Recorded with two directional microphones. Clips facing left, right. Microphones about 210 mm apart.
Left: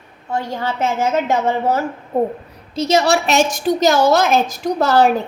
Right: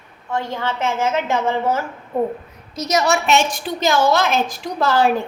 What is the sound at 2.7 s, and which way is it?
A woman's voice, 30° left (ahead or behind).